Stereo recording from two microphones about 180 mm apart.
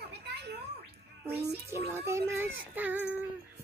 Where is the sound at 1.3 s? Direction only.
65° right (ahead or behind).